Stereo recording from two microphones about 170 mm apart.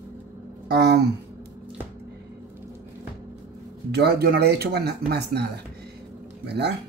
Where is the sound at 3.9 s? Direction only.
70° right (ahead or behind).